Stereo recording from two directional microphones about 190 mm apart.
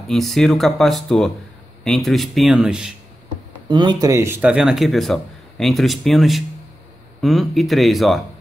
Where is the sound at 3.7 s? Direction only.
25° right (ahead or behind); by 8.2 s centre (ahead or behind).